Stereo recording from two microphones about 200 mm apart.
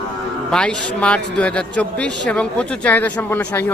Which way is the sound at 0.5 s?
5° left (ahead or behind).